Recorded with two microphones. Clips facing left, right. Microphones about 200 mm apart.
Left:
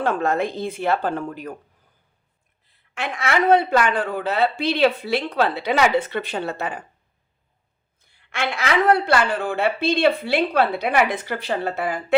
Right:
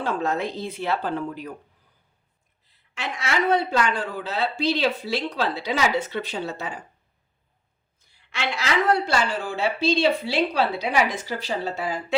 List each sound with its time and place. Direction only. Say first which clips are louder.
0.0 s speech: left 4 dB; 55° left (ahead or behind)
2.6 s speech: left 4 dB; 55° left (ahead or behind)
8.0 s speech: left 3 dB; 55° left (ahead or behind)